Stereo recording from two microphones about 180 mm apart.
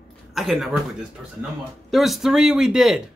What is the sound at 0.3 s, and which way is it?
A man's voice, centre (ahead or behind).